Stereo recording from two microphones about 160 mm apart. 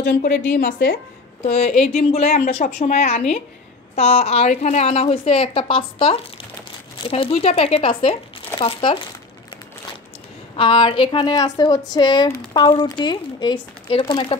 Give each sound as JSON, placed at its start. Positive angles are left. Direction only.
{"t": 0.0, "sound": "a woman's voice", "side_deg": 60}
{"t": 1.4, "sound": "a woman's voice", "side_deg": 45}
{"t": 10.5, "sound": "a woman's voice", "side_deg": 30}